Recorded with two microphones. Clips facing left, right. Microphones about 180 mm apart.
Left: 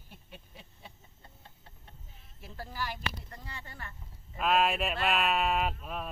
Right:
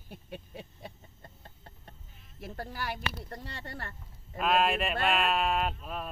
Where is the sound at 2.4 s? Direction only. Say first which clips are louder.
Right 5 dB; 60° right (ahead or behind).